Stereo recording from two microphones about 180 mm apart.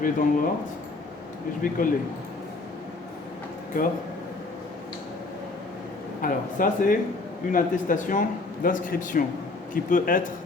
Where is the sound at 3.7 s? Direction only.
50° left (ahead or behind).